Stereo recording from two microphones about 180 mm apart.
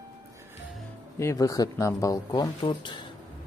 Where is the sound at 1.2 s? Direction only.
20° left (ahead or behind).